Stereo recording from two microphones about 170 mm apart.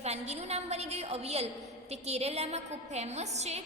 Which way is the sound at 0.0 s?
40° right (ahead or behind).